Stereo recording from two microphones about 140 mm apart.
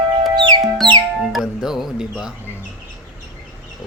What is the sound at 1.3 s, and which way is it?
Music, centre (ahead or behind).